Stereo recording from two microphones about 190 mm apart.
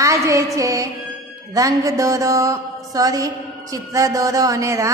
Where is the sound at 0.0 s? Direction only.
15° right (ahead or behind).